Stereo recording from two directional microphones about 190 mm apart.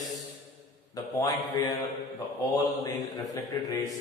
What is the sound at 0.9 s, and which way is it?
Mantra, 20° left (ahead or behind).